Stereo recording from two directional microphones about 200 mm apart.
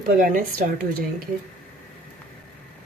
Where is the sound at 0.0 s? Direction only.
45° right (ahead or behind).